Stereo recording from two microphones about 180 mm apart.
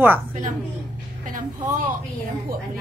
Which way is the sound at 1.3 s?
45° right (ahead or behind).